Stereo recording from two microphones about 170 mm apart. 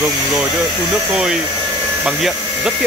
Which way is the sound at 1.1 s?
5° right (ahead or behind).